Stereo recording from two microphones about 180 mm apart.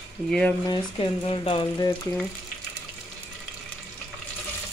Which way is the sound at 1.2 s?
30° left (ahead or behind).